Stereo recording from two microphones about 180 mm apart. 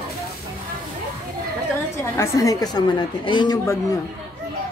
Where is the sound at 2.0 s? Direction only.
15° left (ahead or behind).